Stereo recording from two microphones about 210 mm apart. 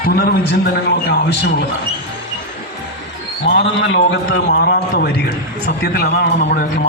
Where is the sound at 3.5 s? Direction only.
60° left (ahead or behind).